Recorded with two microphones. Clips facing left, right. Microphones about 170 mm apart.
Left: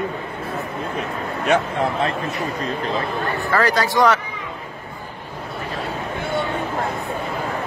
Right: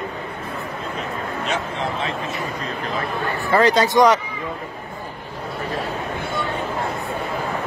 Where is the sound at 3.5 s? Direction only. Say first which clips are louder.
Right 4 dB; 20° right (ahead or behind).